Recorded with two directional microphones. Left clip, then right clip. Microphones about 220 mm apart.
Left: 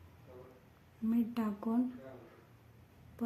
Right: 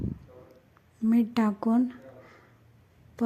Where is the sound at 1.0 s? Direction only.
35° right (ahead or behind).